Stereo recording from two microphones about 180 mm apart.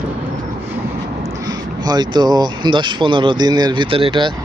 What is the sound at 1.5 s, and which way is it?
Speech, 20° right (ahead or behind).